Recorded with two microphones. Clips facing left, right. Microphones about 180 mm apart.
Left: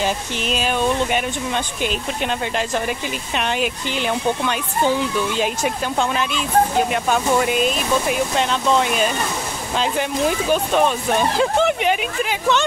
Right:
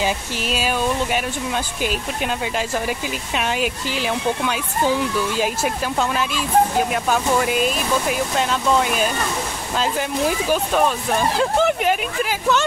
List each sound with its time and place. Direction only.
0.0 s speech: 5° right (ahead or behind)